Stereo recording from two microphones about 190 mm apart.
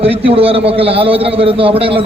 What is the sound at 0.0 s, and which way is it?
A man's voice, 30° right (ahead or behind).